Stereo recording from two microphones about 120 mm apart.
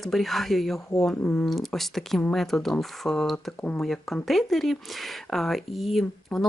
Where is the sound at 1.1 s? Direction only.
10° left (ahead or behind).